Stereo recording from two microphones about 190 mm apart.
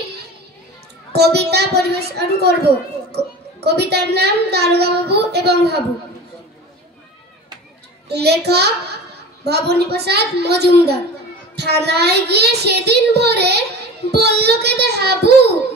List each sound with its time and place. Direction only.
1.1 s child singing: 60° right (ahead or behind)
3.6 s child singing: 60° right (ahead or behind)
8.1 s child singing: 60° right (ahead or behind)